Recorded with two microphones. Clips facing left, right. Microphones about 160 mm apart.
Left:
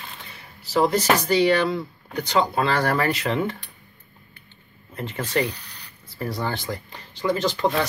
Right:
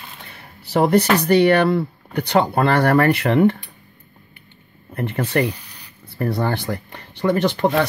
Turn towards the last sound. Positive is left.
turn(degrees=-60)  # may be behind; listen again after turning